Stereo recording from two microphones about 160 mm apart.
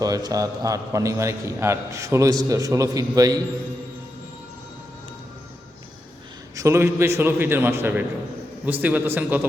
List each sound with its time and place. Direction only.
0.0 s a man's voice: 25° right (ahead or behind)
6.6 s a man's voice: 15° right (ahead or behind)